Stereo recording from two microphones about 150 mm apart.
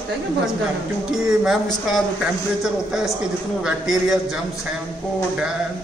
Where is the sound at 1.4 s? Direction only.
Centre (ahead or behind).